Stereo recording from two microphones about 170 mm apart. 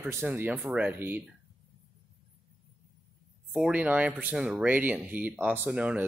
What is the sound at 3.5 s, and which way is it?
Speech, 5° right (ahead or behind).